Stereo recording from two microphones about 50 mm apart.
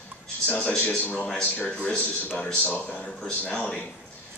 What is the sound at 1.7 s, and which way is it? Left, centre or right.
A man's voice, left.